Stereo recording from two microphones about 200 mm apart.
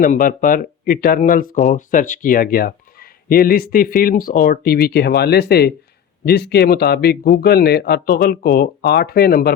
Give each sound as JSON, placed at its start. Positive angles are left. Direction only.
{"t": 0.0, "sound": "speech", "side_deg": 45}